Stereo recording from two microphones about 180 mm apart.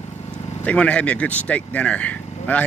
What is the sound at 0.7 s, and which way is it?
Speech, 5° left (ahead or behind).